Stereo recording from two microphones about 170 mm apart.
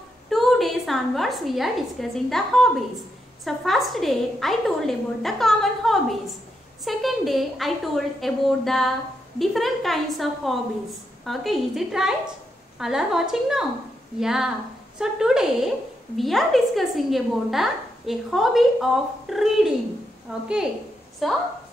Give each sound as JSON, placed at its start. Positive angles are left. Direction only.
{"t": 0.3, "sound": "a woman's voice", "side_deg": 0}